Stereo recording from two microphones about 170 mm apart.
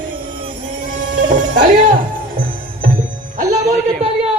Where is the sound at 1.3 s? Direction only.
55° right (ahead or behind).